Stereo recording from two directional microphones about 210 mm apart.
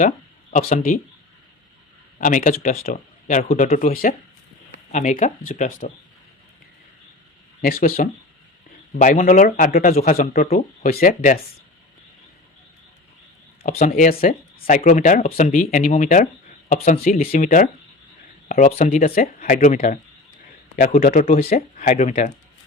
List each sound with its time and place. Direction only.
0.5 s a man's voice: 40° left (ahead or behind)
2.1 s a man's voice: 40° left (ahead or behind)
7.6 s a man's voice: 40° left (ahead or behind)
13.6 s a man's voice: 40° left (ahead or behind)